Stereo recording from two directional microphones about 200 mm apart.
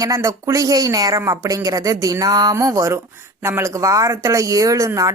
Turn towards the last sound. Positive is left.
turn(degrees=-15)  # may be behind; listen again after turning